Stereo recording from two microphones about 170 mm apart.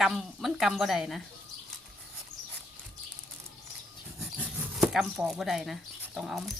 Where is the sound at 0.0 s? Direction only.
5° right (ahead or behind).